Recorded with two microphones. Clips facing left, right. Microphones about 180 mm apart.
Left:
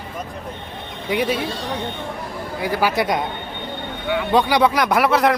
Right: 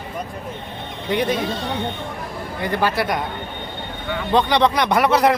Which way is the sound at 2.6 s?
5° left (ahead or behind).